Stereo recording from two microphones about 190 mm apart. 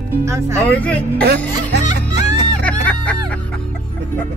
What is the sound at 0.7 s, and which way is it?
Speech, 5° left (ahead or behind).